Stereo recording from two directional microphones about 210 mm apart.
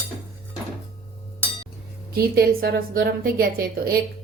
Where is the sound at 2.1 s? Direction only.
50° right (ahead or behind).